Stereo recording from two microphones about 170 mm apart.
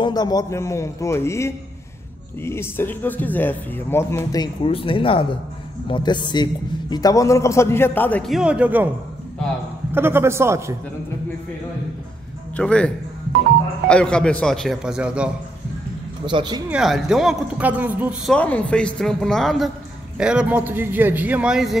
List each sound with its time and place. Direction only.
0.0 s a man's voice: 25° left (ahead or behind)
4.6 s a man's voice: 30° left (ahead or behind); by 8.9 s 10° right (ahead or behind)
9.9 s a man's voice: 15° right (ahead or behind)
12.5 s a man's voice: 5° left (ahead or behind)
16.3 s speech: 25° right (ahead or behind)
16.7 s speech: centre (ahead or behind)
18.3 s a man's voice: 10° left (ahead or behind)